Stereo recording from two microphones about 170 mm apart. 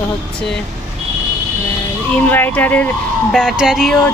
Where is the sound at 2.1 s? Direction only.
10° left (ahead or behind).